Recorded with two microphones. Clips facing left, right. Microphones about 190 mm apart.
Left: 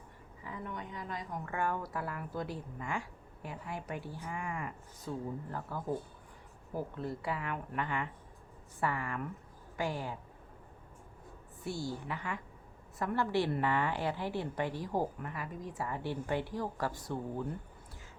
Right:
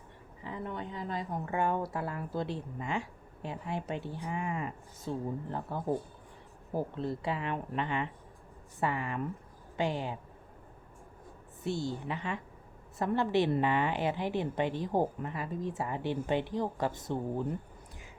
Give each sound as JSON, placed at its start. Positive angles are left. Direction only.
{"t": 0.4, "sound": "a woman's voice", "side_deg": -30}
{"t": 11.6, "sound": "a woman's voice", "side_deg": -20}